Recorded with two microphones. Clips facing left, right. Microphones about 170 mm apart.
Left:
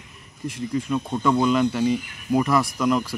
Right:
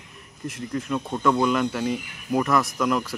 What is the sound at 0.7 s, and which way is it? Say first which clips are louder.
Speech: left 2 dB; 5° left (ahead or behind).